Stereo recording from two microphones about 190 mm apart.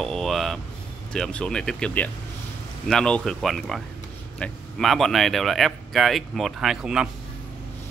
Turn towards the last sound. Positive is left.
turn(degrees=-5)  # may be behind; listen again after turning